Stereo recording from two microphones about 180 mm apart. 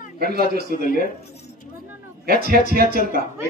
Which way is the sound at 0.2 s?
60° right (ahead or behind).